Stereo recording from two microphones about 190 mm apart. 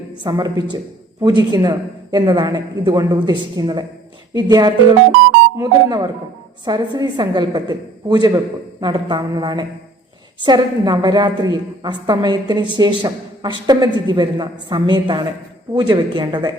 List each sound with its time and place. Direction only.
0.3 s a woman's voice: 20° right (ahead or behind)